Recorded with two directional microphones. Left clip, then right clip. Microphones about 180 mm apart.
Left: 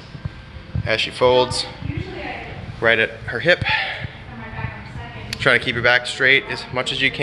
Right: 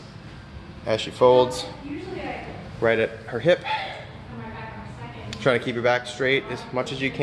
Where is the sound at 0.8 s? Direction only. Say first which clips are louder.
Left 1 dB; 15° right (ahead or behind).